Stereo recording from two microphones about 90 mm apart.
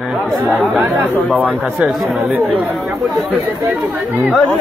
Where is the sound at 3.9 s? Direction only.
20° right (ahead or behind).